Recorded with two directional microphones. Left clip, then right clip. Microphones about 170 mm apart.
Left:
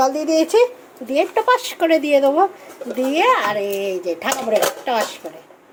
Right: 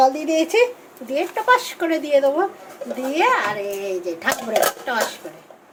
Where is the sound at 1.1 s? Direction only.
40° left (ahead or behind).